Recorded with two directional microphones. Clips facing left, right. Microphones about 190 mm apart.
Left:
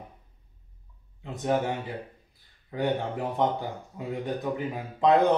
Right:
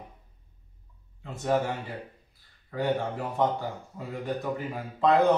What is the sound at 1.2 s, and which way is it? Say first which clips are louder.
Speech: even; 15° left (ahead or behind).